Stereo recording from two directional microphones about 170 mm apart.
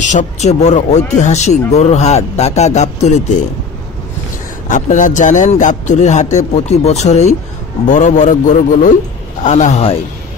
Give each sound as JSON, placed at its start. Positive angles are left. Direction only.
{"t": 0.0, "sound": "a man's voice", "side_deg": 45}
{"t": 4.6, "sound": "a man's voice", "side_deg": 50}